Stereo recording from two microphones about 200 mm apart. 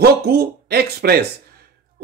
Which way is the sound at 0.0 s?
50° right (ahead or behind).